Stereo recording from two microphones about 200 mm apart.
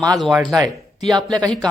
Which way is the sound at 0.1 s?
Centre (ahead or behind).